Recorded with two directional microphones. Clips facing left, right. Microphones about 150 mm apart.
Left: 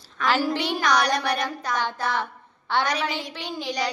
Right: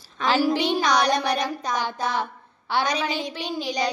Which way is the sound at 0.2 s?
20° right (ahead or behind).